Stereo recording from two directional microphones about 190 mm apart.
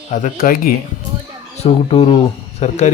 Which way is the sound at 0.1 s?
45° left (ahead or behind).